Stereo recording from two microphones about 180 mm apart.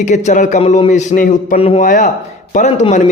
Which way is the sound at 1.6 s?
35° left (ahead or behind).